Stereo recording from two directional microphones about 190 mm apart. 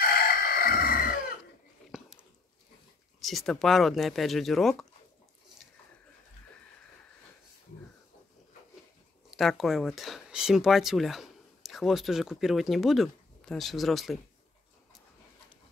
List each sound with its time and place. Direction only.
0.0 s chicken: 55° left (ahead or behind)
1.9 s a sound: 5° right (ahead or behind)
3.2 s speech: centre (ahead or behind)
9.4 s speech: centre (ahead or behind)